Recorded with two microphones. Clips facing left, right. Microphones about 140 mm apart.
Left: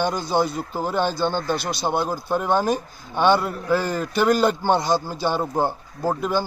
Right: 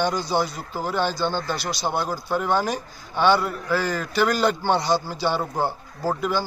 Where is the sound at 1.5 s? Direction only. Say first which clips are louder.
Left 3 dB; 55° left (ahead or behind).